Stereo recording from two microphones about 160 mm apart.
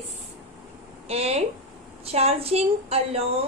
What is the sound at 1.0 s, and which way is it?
Speech, 40° right (ahead or behind).